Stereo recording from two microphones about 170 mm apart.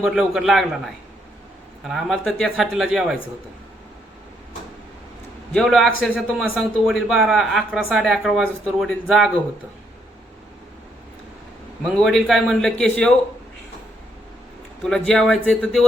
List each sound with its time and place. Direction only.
0.0 s a man's voice: centre (ahead or behind)
5.5 s a man's voice: centre (ahead or behind)
12.0 s a man's voice: centre (ahead or behind)
14.8 s a man's voice: 5° left (ahead or behind)